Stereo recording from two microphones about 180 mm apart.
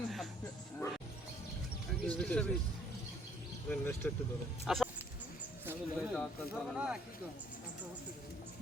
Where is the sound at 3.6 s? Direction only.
10° left (ahead or behind).